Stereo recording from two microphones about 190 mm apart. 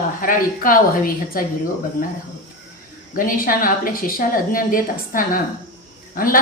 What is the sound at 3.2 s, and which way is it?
A woman's voice, 45° left (ahead or behind).